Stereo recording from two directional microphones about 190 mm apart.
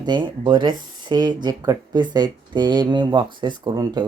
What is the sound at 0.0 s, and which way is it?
Speech, 25° right (ahead or behind).